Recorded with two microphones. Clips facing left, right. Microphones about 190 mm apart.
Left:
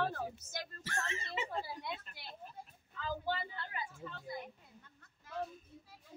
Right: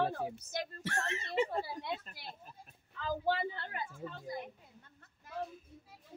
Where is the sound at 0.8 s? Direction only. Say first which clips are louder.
Right 3 dB; 65° right (ahead or behind).